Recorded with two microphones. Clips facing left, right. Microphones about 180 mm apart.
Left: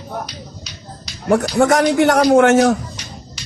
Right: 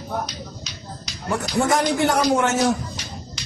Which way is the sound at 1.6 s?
75° left (ahead or behind).